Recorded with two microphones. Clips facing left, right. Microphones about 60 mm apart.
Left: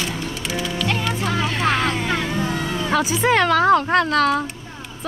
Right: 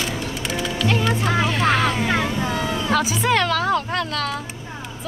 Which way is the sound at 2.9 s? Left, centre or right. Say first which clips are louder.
Left 3 dB; left.